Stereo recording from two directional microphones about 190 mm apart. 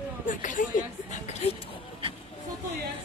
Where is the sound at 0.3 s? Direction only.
45° left (ahead or behind).